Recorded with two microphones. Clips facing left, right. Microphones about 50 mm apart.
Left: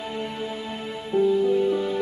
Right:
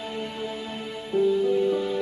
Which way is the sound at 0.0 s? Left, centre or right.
Centre.